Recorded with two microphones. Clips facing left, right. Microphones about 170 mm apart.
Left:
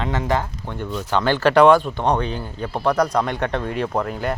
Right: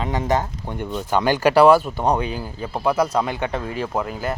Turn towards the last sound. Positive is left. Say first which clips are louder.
# left 2 dB
turn(degrees=0)  # may be behind; listen again after turning